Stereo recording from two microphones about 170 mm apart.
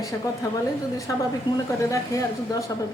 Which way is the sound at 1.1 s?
20° left (ahead or behind).